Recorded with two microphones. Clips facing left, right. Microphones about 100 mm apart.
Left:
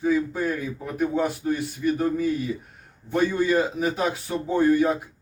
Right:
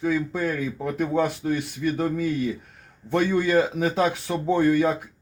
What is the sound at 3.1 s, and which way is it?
Speech, 80° right.